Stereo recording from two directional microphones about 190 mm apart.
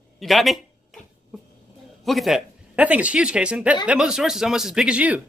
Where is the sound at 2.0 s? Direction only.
Centre (ahead or behind).